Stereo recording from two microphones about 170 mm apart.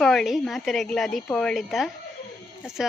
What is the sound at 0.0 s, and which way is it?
Speech, centre (ahead or behind).